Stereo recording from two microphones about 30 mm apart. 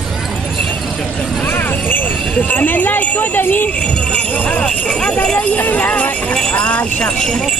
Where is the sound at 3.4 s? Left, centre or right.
Left.